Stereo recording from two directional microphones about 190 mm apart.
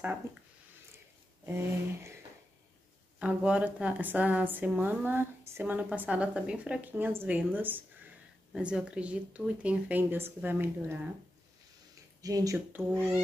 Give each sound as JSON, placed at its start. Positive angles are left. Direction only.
{"t": 0.9, "sound": "a sound", "side_deg": -10}
{"t": 3.2, "sound": "a woman's voice", "side_deg": -5}
{"t": 12.2, "sound": "a woman's voice", "side_deg": -20}